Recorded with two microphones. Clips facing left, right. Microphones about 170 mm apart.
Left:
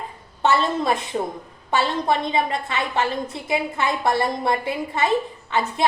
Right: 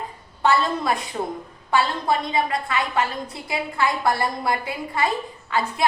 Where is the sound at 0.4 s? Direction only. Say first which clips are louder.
Left 1 dB; 25° left (ahead or behind).